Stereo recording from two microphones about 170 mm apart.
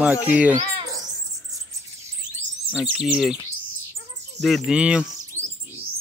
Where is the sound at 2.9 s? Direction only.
Centre (ahead or behind).